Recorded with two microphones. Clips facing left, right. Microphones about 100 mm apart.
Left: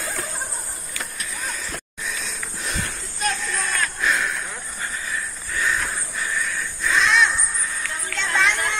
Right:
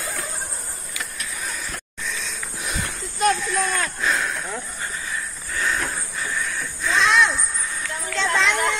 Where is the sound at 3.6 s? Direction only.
25° right (ahead or behind).